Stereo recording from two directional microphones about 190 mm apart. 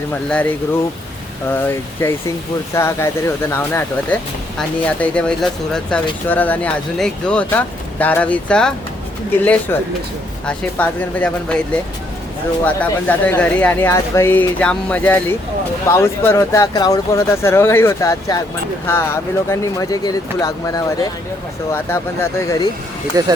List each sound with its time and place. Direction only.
0.1 s speech: 5° left (ahead or behind)
12.6 s speech: 10° left (ahead or behind)
23.1 s speech: 20° right (ahead or behind)